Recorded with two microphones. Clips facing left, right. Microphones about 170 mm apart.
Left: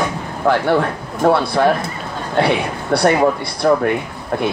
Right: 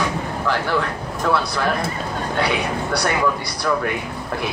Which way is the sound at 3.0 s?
50° left (ahead or behind).